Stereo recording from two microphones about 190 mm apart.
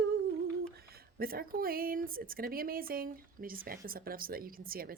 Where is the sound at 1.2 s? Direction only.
50° right (ahead or behind).